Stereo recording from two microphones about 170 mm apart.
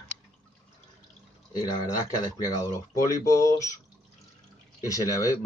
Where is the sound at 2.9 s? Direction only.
20° left (ahead or behind).